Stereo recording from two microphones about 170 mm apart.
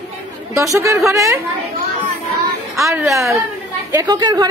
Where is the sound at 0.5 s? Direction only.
20° right (ahead or behind).